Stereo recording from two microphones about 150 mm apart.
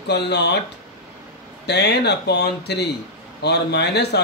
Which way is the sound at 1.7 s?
90° left.